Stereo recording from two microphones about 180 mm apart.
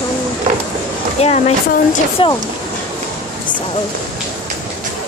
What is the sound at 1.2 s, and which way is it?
Speech, 35° left (ahead or behind).